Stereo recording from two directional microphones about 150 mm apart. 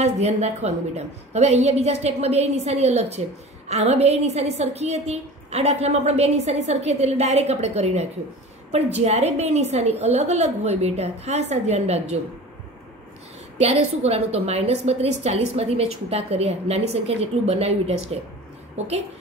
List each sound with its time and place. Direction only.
0.0 s a woman's voice: 45° right (ahead or behind)
13.6 s a woman's voice: 45° right (ahead or behind)